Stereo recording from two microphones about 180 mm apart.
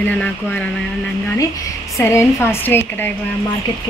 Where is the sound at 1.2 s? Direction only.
20° left (ahead or behind).